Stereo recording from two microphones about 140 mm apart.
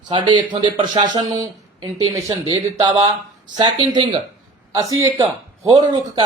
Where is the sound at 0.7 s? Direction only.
50° right (ahead or behind).